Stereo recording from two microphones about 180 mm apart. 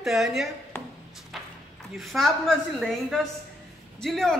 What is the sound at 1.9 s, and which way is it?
A woman's voice, centre (ahead or behind).